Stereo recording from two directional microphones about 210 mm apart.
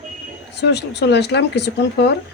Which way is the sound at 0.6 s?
55° left (ahead or behind).